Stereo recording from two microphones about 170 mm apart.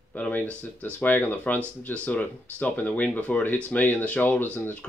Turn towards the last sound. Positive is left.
turn(degrees=10)  # may be behind; listen again after turning